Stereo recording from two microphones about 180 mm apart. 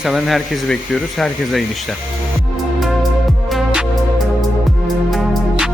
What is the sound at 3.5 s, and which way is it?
Music, centre (ahead or behind).